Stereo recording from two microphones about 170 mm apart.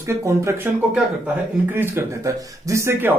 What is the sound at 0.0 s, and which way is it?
Speech, 15° right (ahead or behind).